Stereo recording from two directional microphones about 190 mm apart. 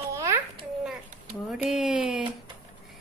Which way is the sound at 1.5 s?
Centre (ahead or behind).